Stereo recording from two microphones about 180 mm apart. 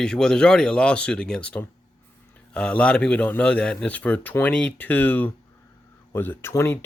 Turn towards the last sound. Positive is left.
turn(degrees=15)  # may be behind; listen again after turning